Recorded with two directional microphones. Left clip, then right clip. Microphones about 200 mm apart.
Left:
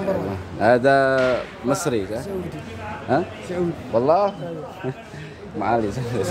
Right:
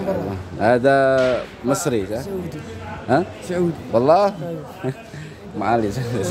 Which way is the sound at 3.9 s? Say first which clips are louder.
Right 3 dB; 20° right (ahead or behind).